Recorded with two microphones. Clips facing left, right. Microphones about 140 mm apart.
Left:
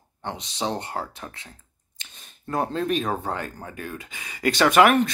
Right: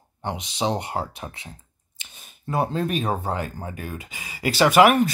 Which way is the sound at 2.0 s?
5° right (ahead or behind).